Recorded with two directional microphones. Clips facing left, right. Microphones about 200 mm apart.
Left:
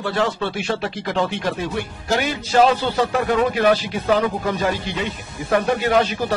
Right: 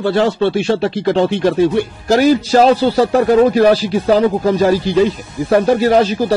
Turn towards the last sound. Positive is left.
turn(degrees=-35)  # may be behind; listen again after turning